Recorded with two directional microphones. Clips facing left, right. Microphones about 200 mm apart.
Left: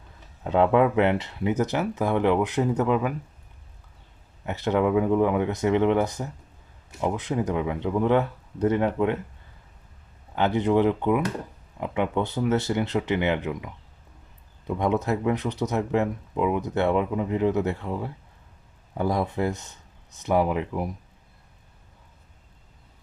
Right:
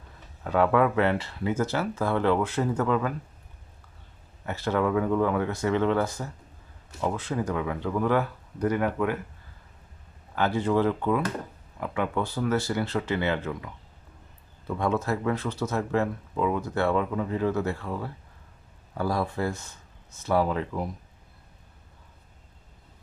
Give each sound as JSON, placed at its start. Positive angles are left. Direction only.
{"t": 0.4, "sound": "speech", "side_deg": 20}
{"t": 4.4, "sound": "speech", "side_deg": 20}
{"t": 10.3, "sound": "speech", "side_deg": 20}
{"t": 14.7, "sound": "speech", "side_deg": 20}